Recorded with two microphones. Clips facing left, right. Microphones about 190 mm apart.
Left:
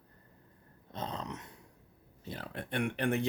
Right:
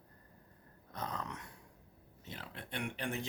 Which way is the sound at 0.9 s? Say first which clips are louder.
Left 3 dB; 25° left (ahead or behind).